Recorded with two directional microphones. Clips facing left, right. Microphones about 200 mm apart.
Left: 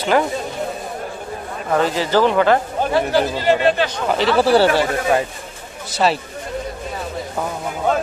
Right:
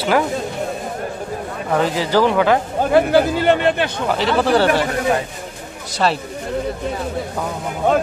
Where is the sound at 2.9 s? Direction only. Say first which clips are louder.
Right 5 dB; 55° right (ahead or behind).